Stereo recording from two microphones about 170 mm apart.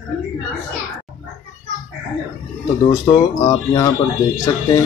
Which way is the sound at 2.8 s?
25° left (ahead or behind).